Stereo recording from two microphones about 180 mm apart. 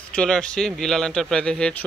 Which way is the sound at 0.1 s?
5° left (ahead or behind).